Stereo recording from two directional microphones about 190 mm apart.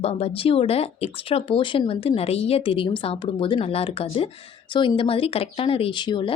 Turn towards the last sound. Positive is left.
turn(degrees=25)  # may be behind; listen again after turning